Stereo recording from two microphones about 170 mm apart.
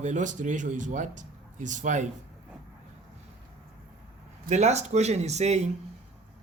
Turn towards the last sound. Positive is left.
turn(degrees=-40)  # may be behind; listen again after turning